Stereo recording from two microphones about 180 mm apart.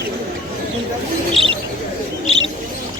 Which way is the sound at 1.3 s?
30° right (ahead or behind).